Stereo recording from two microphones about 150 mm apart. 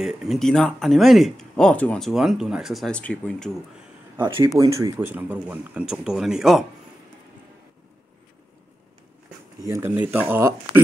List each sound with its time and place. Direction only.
0.0 s speech: centre (ahead or behind)
4.6 s speech: 20° right (ahead or behind)
5.1 s speech: 10° right (ahead or behind)
9.7 s speech: 15° right (ahead or behind)